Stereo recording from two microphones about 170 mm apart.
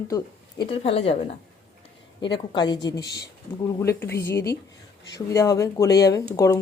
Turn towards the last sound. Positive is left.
turn(degrees=20)  # may be behind; listen again after turning